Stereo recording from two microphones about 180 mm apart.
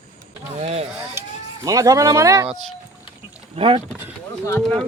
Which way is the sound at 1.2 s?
20° right (ahead or behind).